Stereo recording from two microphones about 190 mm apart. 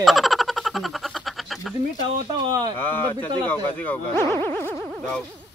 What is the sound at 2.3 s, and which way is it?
Speech, 20° right (ahead or behind).